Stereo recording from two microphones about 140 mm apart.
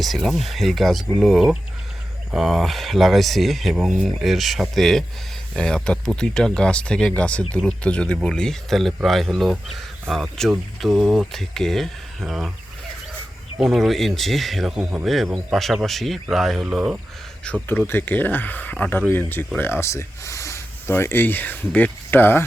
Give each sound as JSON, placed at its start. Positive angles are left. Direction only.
{"t": 0.0, "sound": "speech", "side_deg": 0}
{"t": 13.6, "sound": "speech", "side_deg": 0}
{"t": 17.4, "sound": "speech", "side_deg": 10}